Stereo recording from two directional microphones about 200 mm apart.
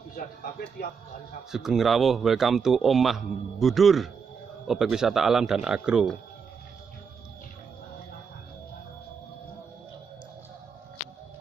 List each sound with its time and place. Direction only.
0.1 s speech: 50° left (ahead or behind)
1.5 s a man's voice: centre (ahead or behind)